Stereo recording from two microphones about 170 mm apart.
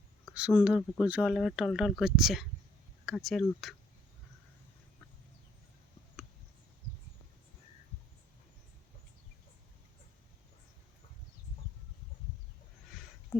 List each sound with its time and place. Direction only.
0.3 s speech: 5° right (ahead or behind)